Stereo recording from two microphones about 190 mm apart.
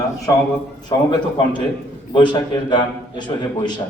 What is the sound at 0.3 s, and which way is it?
Speech, 20° left (ahead or behind).